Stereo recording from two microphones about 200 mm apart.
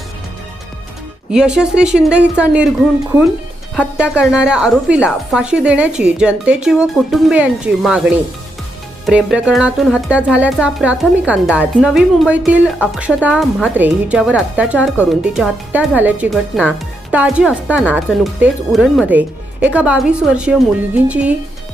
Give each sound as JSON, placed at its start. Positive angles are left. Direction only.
{"t": 1.3, "sound": "speech", "side_deg": -5}
{"t": 9.0, "sound": "speech", "side_deg": -5}